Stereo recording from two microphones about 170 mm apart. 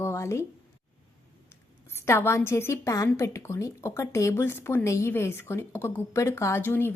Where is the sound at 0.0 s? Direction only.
15° left (ahead or behind).